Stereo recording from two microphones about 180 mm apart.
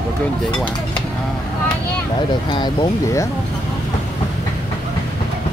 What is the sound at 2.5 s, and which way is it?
Speech, 25° left (ahead or behind).